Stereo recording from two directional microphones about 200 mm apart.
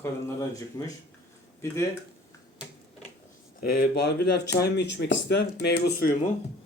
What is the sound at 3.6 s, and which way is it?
Speech, 50° left (ahead or behind).